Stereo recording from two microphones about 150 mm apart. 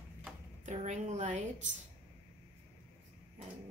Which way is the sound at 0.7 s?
50° right (ahead or behind).